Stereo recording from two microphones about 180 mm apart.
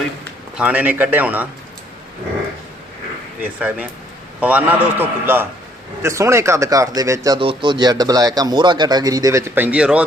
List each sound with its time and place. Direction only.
0.5 s a man's voice: 5° right (ahead or behind)
3.4 s a man's voice: 5° right (ahead or behind)